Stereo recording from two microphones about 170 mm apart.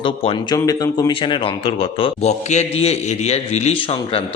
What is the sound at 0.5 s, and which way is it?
A man's voice, 20° left (ahead or behind).